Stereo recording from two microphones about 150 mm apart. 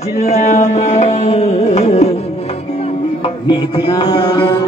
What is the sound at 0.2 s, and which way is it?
Music, 50° left (ahead or behind).